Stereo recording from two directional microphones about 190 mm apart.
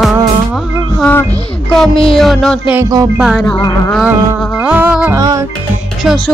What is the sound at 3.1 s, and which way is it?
Speech, centre (ahead or behind).